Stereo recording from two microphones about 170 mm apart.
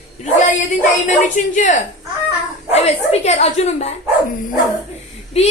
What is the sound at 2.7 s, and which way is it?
A woman's voice, 40° left (ahead or behind).